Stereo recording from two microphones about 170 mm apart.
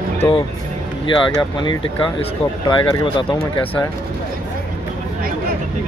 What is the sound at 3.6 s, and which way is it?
Speech, 10° left (ahead or behind).